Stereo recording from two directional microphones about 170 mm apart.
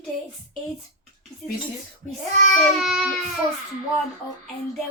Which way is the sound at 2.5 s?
Centre (ahead or behind).